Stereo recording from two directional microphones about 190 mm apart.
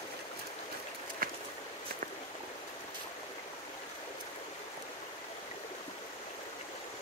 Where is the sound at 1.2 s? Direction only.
50° right (ahead or behind).